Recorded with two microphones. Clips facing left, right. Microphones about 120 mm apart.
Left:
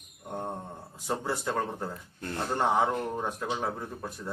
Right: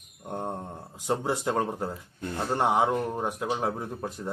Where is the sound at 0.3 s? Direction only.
20° right (ahead or behind).